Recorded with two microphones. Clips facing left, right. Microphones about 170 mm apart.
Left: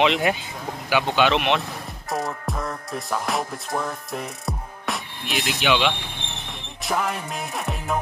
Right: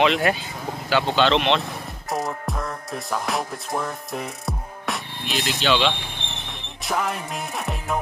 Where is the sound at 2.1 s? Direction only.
Centre (ahead or behind).